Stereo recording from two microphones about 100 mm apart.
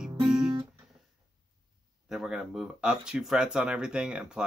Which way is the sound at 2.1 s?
5° right (ahead or behind).